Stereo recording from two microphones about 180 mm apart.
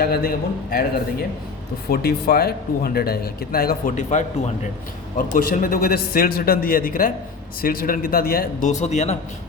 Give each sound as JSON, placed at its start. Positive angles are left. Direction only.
{"t": 0.0, "sound": "speech", "side_deg": 55}
{"t": 1.9, "sound": "a man's voice", "side_deg": 60}